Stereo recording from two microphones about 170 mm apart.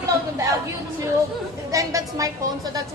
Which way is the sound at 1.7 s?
20° right (ahead or behind).